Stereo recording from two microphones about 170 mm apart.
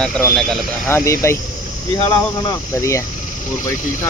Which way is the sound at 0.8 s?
15° left (ahead or behind).